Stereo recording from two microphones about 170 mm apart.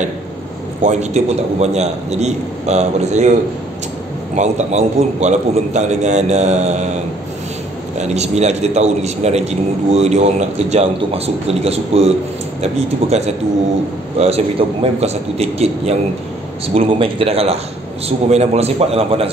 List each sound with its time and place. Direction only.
0.8 s a man's voice: 40° right (ahead or behind)
4.4 s a man's voice: 40° right (ahead or behind)
8.0 s a man's voice: 40° right (ahead or behind)